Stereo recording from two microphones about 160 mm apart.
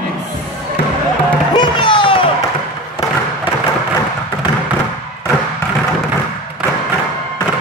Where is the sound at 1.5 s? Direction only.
30° left (ahead or behind).